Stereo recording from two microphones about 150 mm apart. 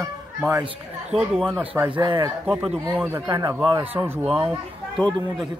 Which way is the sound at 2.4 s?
5° right (ahead or behind).